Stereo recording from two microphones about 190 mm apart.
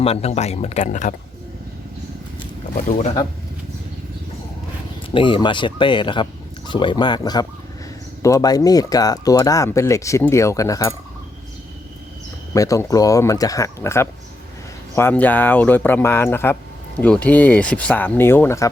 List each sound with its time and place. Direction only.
0.0 s speech: 35° left (ahead or behind)
2.7 s speech: 45° left (ahead or behind)
5.1 s speech: 25° left (ahead or behind)
12.5 s speech: 15° left (ahead or behind)